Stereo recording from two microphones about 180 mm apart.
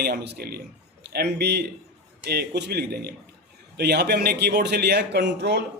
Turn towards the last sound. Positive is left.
turn(degrees=-70)  # may be behind; listen again after turning